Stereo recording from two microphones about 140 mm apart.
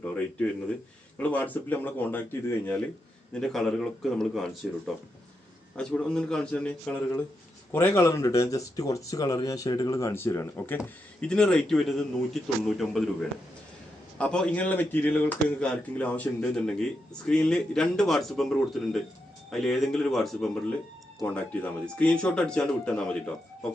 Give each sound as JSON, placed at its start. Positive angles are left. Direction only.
{"t": 0.0, "sound": "speech", "side_deg": 10}
{"t": 3.3, "sound": "a man's voice", "side_deg": 5}
{"t": 5.7, "sound": "a man's voice", "side_deg": 5}
{"t": 14.2, "sound": "a man's voice", "side_deg": 10}